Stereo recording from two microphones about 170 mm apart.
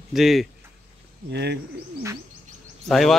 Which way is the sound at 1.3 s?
80° right.